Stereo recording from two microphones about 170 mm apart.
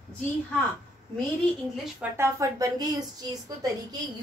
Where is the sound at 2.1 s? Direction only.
15° right (ahead or behind).